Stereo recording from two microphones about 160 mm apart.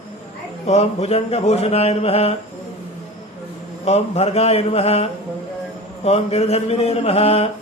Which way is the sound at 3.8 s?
40° left (ahead or behind).